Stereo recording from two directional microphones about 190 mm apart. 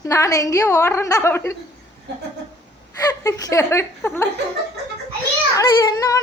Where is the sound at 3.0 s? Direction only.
20° left (ahead or behind).